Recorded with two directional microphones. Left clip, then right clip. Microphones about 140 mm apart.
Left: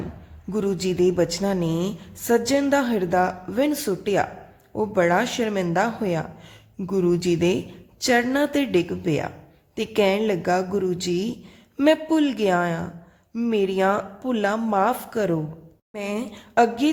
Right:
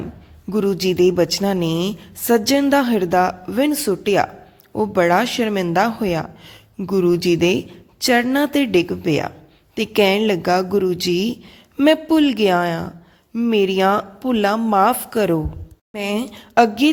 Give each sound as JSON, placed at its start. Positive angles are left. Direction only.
{"t": 0.5, "sound": "speech", "side_deg": -20}